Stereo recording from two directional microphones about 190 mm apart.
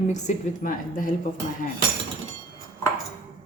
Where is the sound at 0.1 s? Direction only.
40° left (ahead or behind).